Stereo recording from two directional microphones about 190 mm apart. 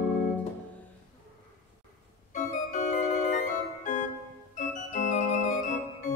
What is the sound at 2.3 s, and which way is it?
Organ, 40° left (ahead or behind).